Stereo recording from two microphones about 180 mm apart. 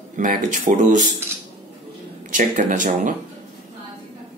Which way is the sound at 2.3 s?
45° right (ahead or behind).